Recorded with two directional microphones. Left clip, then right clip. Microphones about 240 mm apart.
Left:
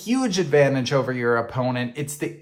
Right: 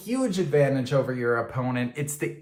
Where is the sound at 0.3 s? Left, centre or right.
Left.